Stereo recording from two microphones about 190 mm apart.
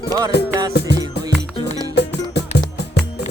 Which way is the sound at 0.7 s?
60° left (ahead or behind).